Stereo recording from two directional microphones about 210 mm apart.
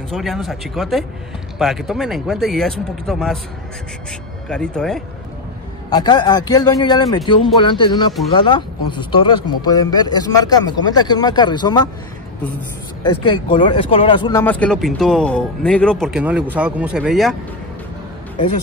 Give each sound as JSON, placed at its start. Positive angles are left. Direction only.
{"t": 0.1, "sound": "speech", "side_deg": 0}
{"t": 4.5, "sound": "speech", "side_deg": 5}
{"t": 5.9, "sound": "speech", "side_deg": 20}
{"t": 13.2, "sound": "speech", "side_deg": 25}
{"t": 14.4, "sound": "speech", "side_deg": 5}